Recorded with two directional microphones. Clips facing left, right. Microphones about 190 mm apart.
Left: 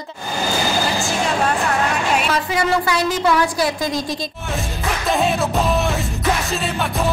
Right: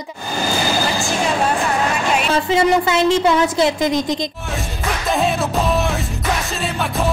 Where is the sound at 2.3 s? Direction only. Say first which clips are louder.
Right 4 dB; 25° right (ahead or behind).